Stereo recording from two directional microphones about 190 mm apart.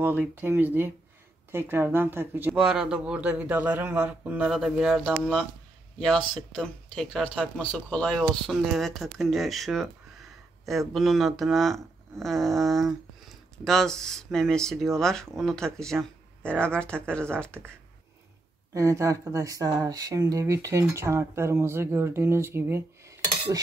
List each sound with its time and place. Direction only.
0.0 s speech: 10° right (ahead or behind)
18.7 s speech: 15° right (ahead or behind)